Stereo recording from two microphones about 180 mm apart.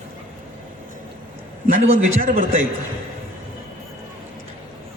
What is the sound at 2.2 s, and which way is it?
Speech, 50° right (ahead or behind).